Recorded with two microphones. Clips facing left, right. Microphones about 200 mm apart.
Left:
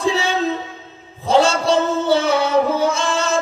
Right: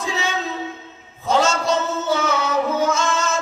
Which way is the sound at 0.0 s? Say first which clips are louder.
Left 7 dB; 30° left (ahead or behind).